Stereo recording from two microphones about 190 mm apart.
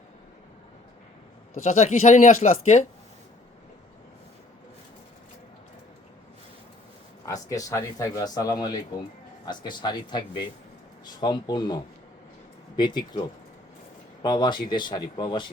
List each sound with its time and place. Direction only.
1.6 s speech: 35° left (ahead or behind)
7.4 s speech: 20° left (ahead or behind)